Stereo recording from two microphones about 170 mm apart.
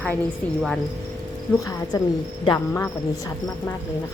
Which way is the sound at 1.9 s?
20° left (ahead or behind).